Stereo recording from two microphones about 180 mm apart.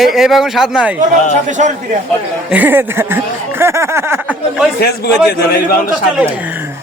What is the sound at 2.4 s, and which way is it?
Speech, 10° right (ahead or behind).